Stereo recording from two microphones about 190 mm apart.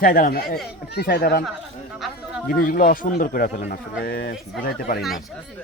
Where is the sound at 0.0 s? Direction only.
50° left (ahead or behind).